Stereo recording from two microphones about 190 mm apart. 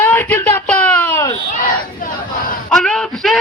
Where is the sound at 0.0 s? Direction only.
10° left (ahead or behind).